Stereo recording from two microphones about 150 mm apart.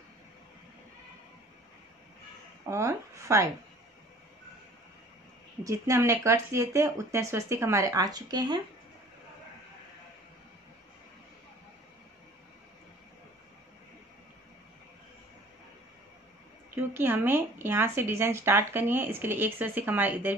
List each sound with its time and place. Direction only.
2.7 s speech: 20° right (ahead or behind)
5.6 s speech: 20° right (ahead or behind)
16.7 s speech: 15° right (ahead or behind)